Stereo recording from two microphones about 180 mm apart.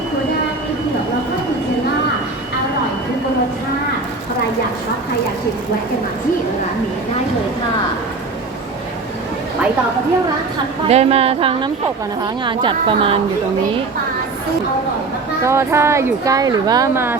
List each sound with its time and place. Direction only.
10.8 s a woman's voice: 35° right (ahead or behind)
15.4 s speech: 15° right (ahead or behind)